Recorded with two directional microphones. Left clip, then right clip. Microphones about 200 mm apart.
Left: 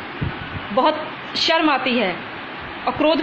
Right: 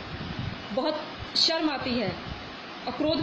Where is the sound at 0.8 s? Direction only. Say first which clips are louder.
Left 10 dB; 15° right (ahead or behind).